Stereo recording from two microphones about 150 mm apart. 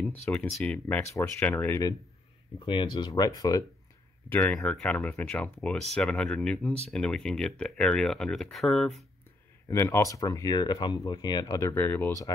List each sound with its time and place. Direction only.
0.0 s speech: 10° left (ahead or behind)
2.6 s speech: 35° left (ahead or behind)
4.3 s speech: 10° left (ahead or behind)
9.7 s speech: 15° left (ahead or behind)